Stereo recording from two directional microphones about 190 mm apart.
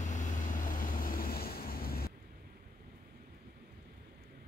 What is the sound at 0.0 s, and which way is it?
Vehicle, 40° left (ahead or behind).